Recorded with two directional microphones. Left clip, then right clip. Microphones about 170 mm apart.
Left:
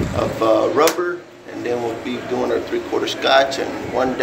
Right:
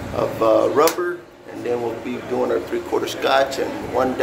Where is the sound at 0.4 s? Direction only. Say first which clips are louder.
Even; 15° right (ahead or behind).